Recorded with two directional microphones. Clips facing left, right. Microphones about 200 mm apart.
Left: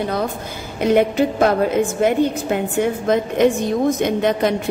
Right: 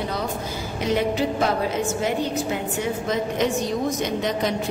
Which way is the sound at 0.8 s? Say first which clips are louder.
Left 7 dB; 55° left (ahead or behind).